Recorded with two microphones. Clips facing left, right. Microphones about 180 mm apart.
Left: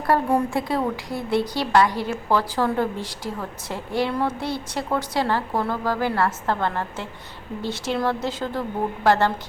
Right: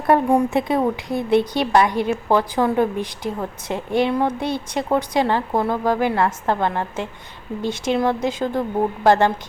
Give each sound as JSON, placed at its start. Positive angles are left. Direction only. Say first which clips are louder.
{"t": 0.1, "sound": "a woman's voice", "louder": "right 4 dB", "side_deg": -15}